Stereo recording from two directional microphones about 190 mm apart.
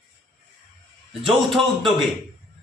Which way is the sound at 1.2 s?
Centre (ahead or behind).